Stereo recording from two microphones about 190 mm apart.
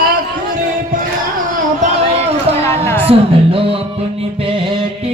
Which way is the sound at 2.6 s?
10° left (ahead or behind).